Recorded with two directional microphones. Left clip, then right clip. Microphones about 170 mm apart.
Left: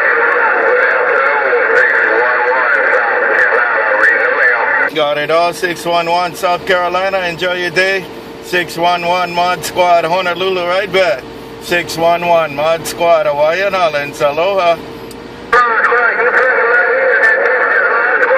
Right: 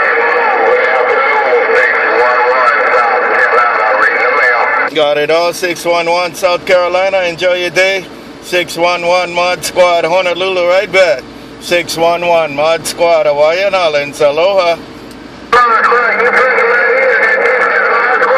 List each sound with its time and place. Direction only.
0.0 s radio: 50° right (ahead or behind)
8.5 s speech: 35° right (ahead or behind)
15.5 s radio: 45° right (ahead or behind)